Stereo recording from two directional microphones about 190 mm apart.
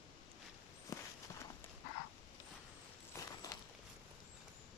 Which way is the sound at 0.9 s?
15° left (ahead or behind).